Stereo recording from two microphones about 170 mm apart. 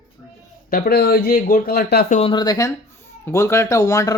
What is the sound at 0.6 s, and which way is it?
Speech, 60° left (ahead or behind).